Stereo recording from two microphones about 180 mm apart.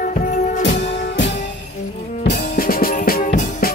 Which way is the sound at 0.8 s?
80° left.